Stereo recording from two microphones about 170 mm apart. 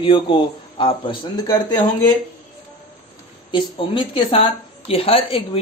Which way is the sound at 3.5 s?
30° left (ahead or behind).